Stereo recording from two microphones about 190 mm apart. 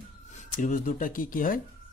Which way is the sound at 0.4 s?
45° left (ahead or behind).